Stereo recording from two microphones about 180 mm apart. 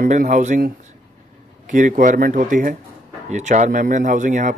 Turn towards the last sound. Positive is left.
turn(degrees=-45)  # may be behind; listen again after turning